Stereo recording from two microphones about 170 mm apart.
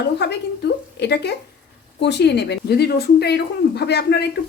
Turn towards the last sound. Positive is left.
turn(degrees=75)  # may be behind; listen again after turning